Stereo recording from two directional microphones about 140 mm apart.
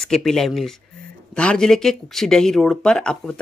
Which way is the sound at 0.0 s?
5° left (ahead or behind).